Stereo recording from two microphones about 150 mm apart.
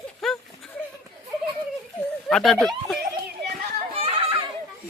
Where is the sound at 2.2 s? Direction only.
5° left (ahead or behind).